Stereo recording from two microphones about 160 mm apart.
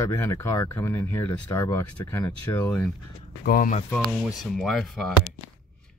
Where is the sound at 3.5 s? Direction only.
60° left (ahead or behind).